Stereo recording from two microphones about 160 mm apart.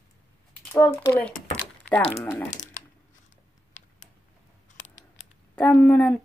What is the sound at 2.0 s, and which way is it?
Speech, 40° left (ahead or behind).